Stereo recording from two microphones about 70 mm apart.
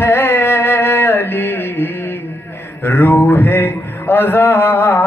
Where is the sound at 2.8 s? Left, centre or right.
Left.